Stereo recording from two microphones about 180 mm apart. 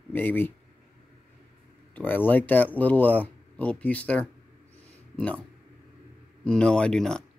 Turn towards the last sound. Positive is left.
turn(degrees=5)  # may be behind; listen again after turning